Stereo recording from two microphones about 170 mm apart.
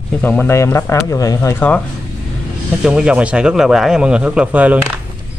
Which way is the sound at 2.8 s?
5° right (ahead or behind).